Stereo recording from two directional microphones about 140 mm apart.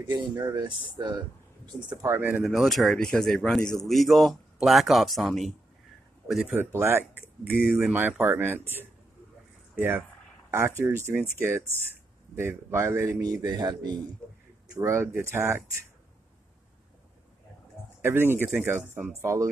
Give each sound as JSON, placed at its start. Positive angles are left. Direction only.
{"t": 0.0, "sound": "speech", "side_deg": -30}
{"t": 2.4, "sound": "speech", "side_deg": 0}
{"t": 6.5, "sound": "speech", "side_deg": -15}
{"t": 18.0, "sound": "speech", "side_deg": -15}